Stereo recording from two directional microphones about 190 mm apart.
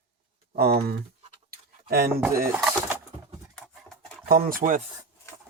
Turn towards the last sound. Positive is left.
turn(degrees=-45)  # may be behind; listen again after turning